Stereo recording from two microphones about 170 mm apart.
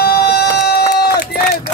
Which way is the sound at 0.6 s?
70° left (ahead or behind).